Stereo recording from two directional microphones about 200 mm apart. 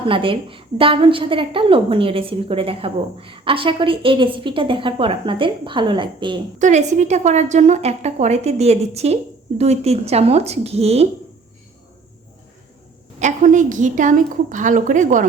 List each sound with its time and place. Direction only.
0.1 s a woman's voice: 25° right (ahead or behind)
6.6 s a woman's voice: 35° right (ahead or behind)
13.1 s a woman's voice: 40° right (ahead or behind)